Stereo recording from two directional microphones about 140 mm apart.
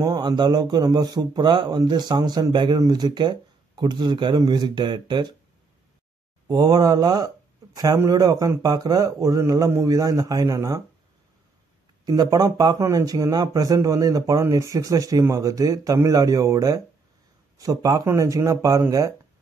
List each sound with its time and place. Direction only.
0.0 s a man's voice: 25° right (ahead or behind)
6.4 s speech: 25° right (ahead or behind)
12.1 s speech: 25° right (ahead or behind)